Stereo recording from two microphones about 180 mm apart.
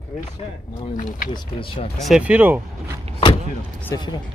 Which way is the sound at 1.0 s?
50° left (ahead or behind).